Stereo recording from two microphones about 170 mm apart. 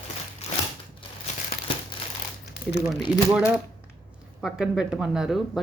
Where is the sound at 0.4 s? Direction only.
40° left (ahead or behind).